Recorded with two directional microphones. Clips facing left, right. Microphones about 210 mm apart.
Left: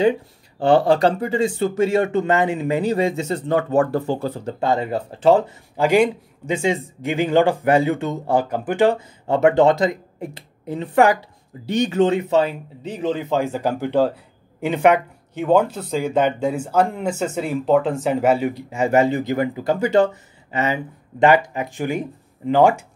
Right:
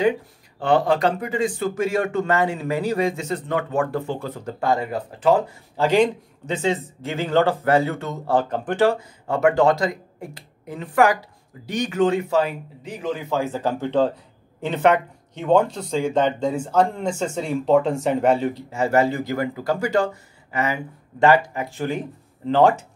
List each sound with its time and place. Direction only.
0.6 s speech: 30° left (ahead or behind)
4.6 s speech: 25° left (ahead or behind)
5.8 s speech: 10° left (ahead or behind)
8.8 s speech: 20° left (ahead or behind)